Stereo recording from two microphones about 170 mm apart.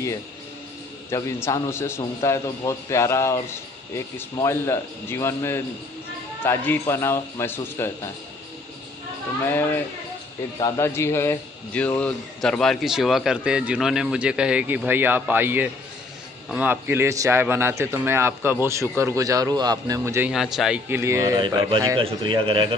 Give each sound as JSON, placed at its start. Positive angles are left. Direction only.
{"t": 1.1, "sound": "a man's voice", "side_deg": 20}
{"t": 9.4, "sound": "a man's voice", "side_deg": 15}
{"t": 20.2, "sound": "a man's voice", "side_deg": 0}
{"t": 21.4, "sound": "a man's voice", "side_deg": -25}